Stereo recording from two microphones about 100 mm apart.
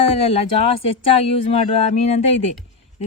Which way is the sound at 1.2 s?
85° left.